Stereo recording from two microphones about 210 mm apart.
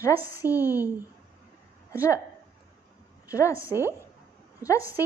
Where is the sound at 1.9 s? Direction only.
15° left (ahead or behind).